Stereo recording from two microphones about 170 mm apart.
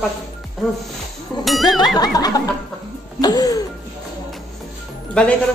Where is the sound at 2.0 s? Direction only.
20° left (ahead or behind).